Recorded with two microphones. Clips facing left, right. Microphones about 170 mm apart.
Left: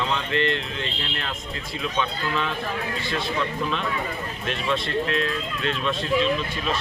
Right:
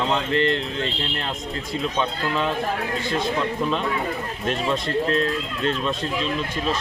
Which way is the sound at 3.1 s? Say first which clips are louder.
Right 3 dB; 45° right (ahead or behind).